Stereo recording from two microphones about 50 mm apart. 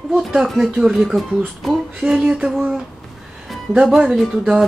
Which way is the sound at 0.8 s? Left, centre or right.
Centre.